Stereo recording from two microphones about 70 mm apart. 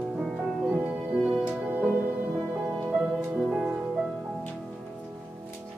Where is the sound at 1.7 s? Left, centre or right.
Right.